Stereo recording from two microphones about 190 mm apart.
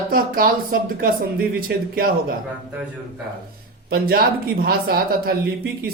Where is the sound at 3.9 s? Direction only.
50° right (ahead or behind).